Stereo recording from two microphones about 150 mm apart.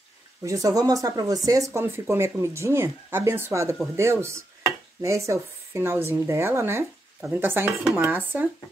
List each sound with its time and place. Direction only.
0.4 s speech: 20° right (ahead or behind)